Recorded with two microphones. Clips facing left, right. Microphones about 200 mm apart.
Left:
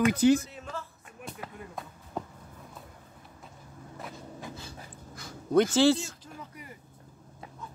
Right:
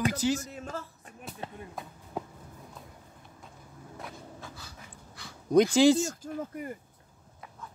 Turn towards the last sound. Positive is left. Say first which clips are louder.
# right 10 dB
turn(degrees=-50)  # may be behind; listen again after turning